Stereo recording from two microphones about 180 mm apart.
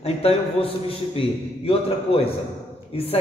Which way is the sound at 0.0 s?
35° left (ahead or behind).